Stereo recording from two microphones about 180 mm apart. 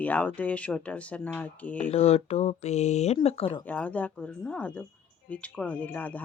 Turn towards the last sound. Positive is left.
turn(degrees=10)  # may be behind; listen again after turning